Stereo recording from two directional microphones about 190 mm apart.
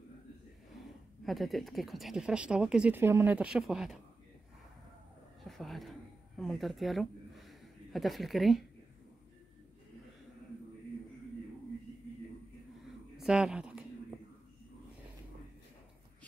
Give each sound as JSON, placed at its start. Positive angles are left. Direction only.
{"t": 1.2, "sound": "speech", "side_deg": 0}
{"t": 5.5, "sound": "a sound", "side_deg": 0}
{"t": 13.2, "sound": "speech", "side_deg": -5}